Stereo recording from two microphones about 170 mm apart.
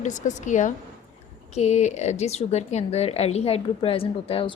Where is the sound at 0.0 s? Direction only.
45° left (ahead or behind).